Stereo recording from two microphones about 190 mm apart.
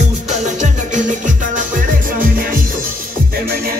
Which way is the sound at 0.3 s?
40° right (ahead or behind).